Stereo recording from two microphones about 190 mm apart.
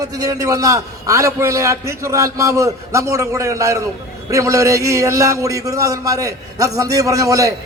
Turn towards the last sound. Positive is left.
turn(degrees=-15)  # may be behind; listen again after turning